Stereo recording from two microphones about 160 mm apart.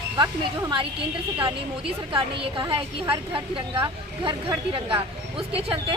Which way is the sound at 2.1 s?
35° right (ahead or behind).